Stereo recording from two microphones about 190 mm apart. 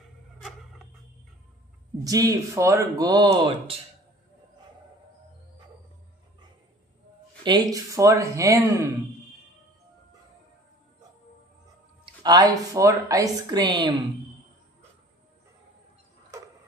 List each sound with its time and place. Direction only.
0.4 s a sound: centre (ahead or behind)
2.0 s speech: 20° right (ahead or behind)
7.4 s speech: 20° right (ahead or behind)
12.0 s speech: 20° right (ahead or behind)